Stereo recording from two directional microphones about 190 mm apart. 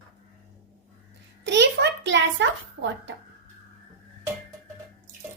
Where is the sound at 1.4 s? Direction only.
65° right (ahead or behind).